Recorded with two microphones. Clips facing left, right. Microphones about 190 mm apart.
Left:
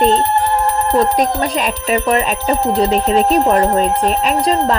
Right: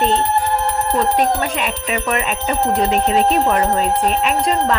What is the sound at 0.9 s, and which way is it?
Speech, 40° left (ahead or behind).